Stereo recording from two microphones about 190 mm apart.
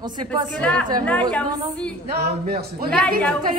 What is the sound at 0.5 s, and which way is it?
A woman's voice, 5° left (ahead or behind).